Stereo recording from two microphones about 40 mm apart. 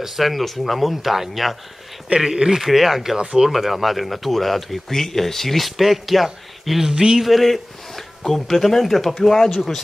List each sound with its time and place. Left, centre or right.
0.0 s speech: centre
2.1 s speech: centre
6.9 s speech: right
7.2 s speech: centre